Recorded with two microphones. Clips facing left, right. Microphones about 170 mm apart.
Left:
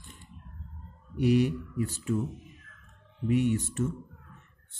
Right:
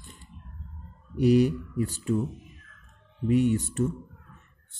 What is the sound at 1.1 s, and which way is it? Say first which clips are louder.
Speech: right 4 dB; 35° right (ahead or behind).